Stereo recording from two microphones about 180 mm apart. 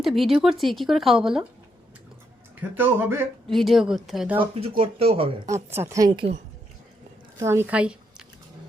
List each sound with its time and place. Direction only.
0.0 s a woman's voice: centre (ahead or behind)
2.6 s speech: 10° right (ahead or behind)
3.4 s a woman's voice: centre (ahead or behind)
4.4 s speech: 35° right (ahead or behind)
5.7 s speech: 15° right (ahead or behind)
7.3 s speech: 15° right (ahead or behind)